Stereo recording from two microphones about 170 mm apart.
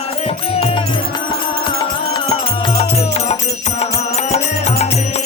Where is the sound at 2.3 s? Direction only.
35° left (ahead or behind).